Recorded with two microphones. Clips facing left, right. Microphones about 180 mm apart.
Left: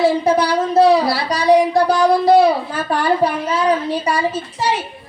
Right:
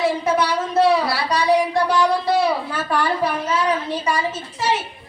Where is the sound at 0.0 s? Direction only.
35° left (ahead or behind).